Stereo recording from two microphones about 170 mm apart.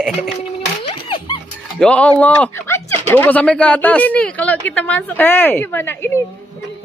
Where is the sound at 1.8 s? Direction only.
5° left (ahead or behind).